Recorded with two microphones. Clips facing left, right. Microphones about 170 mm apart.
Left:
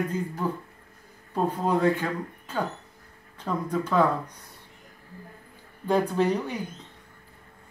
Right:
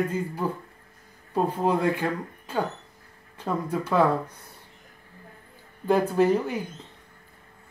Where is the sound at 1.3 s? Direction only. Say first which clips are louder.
Right 1 dB; 10° right (ahead or behind).